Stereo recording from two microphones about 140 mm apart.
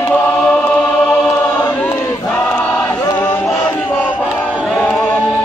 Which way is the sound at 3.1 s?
10° left (ahead or behind).